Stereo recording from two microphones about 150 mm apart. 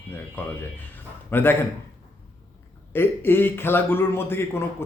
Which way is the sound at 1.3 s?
15° left (ahead or behind).